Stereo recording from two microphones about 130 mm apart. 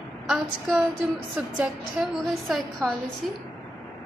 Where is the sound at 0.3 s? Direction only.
Centre (ahead or behind).